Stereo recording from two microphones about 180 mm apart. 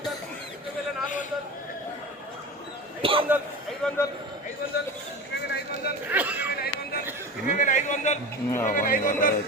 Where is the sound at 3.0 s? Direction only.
30° right (ahead or behind).